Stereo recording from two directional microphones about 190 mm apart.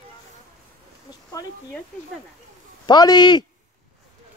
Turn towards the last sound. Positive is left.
turn(degrees=25)  # may be behind; listen again after turning